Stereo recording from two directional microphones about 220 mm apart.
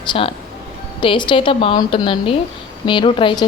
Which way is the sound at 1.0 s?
20° left (ahead or behind).